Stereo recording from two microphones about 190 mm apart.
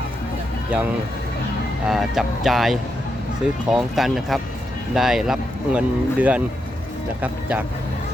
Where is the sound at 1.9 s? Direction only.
Centre (ahead or behind).